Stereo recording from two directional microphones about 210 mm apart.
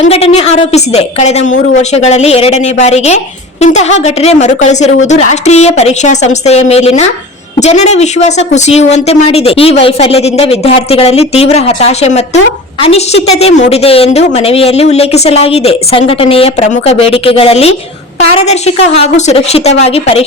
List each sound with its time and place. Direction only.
0.0 s a woman's voice: 30° left (ahead or behind)